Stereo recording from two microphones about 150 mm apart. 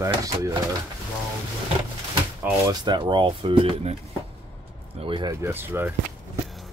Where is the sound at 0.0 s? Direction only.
20° right (ahead or behind).